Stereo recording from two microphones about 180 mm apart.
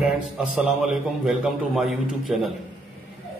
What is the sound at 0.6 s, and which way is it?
A man's voice, centre (ahead or behind).